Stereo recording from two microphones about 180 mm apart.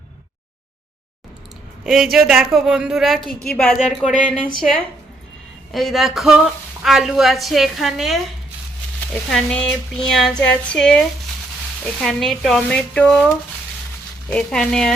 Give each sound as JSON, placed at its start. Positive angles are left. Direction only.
{"t": 1.8, "sound": "speech", "side_deg": 0}
{"t": 4.0, "sound": "speech", "side_deg": 45}
{"t": 5.7, "sound": "speech", "side_deg": 0}
{"t": 9.3, "sound": "speech", "side_deg": 5}
{"t": 12.0, "sound": "speech", "side_deg": 0}
{"t": 14.3, "sound": "speech", "side_deg": 5}